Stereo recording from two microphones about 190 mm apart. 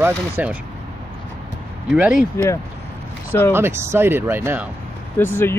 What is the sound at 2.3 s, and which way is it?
Speech, 15° left (ahead or behind).